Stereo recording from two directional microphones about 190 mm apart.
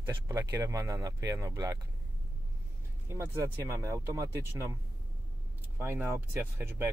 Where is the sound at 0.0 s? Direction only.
15° right (ahead or behind).